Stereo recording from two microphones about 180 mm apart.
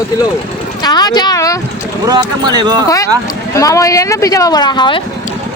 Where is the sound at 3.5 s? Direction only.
20° left (ahead or behind).